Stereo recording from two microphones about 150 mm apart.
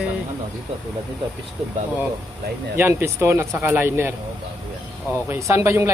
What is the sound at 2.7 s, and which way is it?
Speech, 15° right (ahead or behind).